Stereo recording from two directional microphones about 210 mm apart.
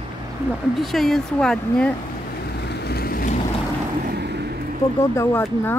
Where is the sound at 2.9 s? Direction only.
45° left (ahead or behind).